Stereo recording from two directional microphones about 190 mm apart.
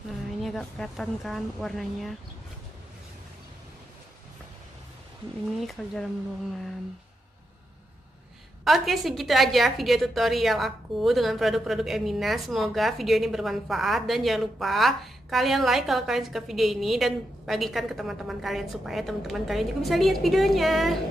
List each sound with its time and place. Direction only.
0.4 s a woman's voice: centre (ahead or behind)
5.6 s a woman's voice: centre (ahead or behind)
8.6 s a woman's voice: centre (ahead or behind)